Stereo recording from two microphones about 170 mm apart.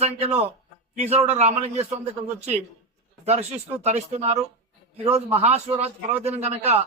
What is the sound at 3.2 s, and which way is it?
A man's voice, 40° right (ahead or behind).